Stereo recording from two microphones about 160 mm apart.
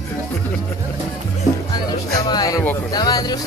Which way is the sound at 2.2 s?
25° left (ahead or behind).